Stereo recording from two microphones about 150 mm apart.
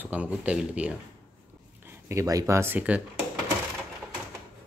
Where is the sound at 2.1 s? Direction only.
20° right (ahead or behind).